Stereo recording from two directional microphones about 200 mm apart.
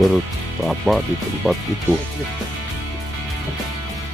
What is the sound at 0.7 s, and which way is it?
Speech, centre (ahead or behind).